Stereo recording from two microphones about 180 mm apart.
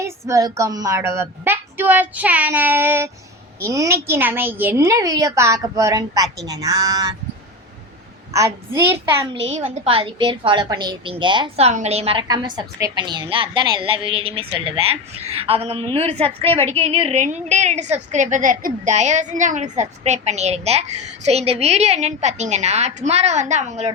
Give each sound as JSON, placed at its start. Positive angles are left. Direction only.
{"t": 0.0, "sound": "a woman's voice", "side_deg": -20}
{"t": 8.3, "sound": "a child's voice", "side_deg": -15}
{"t": 9.3, "sound": "a woman's voice", "side_deg": -35}